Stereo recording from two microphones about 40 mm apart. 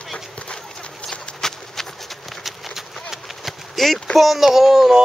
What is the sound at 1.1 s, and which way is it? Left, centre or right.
Bird, centre.